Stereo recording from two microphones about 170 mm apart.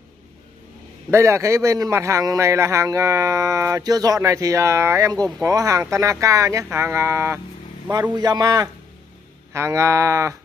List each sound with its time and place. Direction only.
1.1 s a man's voice: 15° right (ahead or behind)